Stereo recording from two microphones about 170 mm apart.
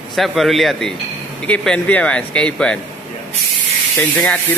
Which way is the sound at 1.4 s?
5° left (ahead or behind).